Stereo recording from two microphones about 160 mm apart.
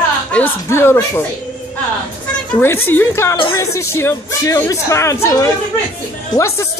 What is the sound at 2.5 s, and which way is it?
A woman's voice, 15° left (ahead or behind).